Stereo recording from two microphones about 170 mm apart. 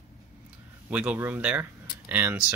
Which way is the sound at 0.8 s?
10° right (ahead or behind).